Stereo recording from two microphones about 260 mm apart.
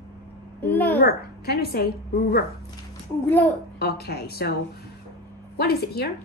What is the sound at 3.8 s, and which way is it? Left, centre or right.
Speech, left.